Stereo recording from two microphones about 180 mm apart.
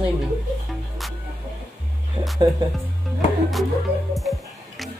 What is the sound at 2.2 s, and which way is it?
Music, 25° right (ahead or behind).